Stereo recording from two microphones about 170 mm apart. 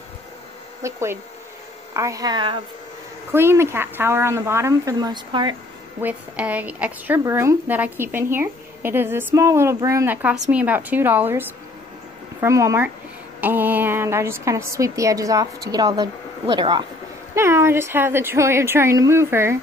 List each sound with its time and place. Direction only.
0.8 s speech: 15° right (ahead or behind)
3.3 s speech: 15° right (ahead or behind)
6.0 s speech: 10° right (ahead or behind); by 16.8 s 25° right (ahead or behind)
17.4 s speech: 15° right (ahead or behind)